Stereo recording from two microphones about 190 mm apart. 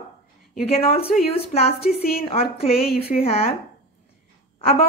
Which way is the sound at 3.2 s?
30° left (ahead or behind).